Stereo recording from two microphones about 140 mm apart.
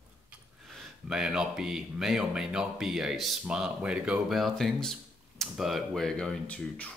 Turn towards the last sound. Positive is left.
turn(degrees=10)  # may be behind; listen again after turning